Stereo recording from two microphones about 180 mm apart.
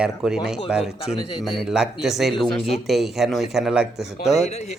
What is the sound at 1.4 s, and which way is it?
A man's voice, centre (ahead or behind).